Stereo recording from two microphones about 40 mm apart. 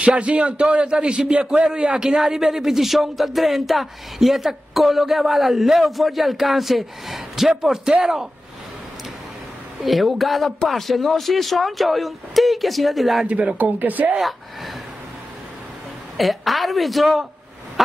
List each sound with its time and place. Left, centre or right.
0.0 s a man's voice: right; by 8.3 s centre
9.8 s speech: centre
13.6 s a woman's voice: right
16.2 s speech: centre
17.8 s a sound: centre